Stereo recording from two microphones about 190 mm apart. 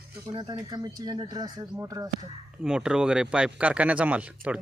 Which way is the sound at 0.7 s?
20° right (ahead or behind).